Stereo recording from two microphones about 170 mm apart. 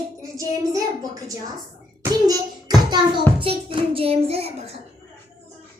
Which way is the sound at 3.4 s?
30° right (ahead or behind).